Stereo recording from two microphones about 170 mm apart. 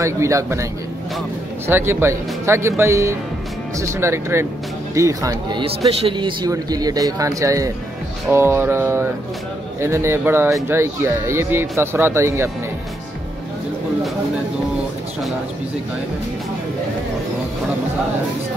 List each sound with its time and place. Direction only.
0.0 s speech: 15° right (ahead or behind)
1.7 s a man's voice: 15° right (ahead or behind)